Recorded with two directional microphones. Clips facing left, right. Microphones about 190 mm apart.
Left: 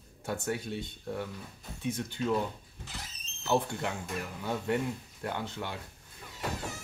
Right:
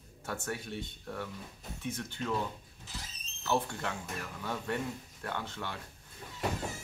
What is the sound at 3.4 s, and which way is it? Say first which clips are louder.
Speech: left 3 dB; 15° left (ahead or behind).